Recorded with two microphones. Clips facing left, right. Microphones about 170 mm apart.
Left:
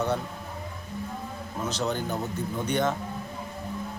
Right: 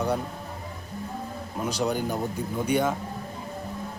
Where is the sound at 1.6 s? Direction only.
10° right (ahead or behind).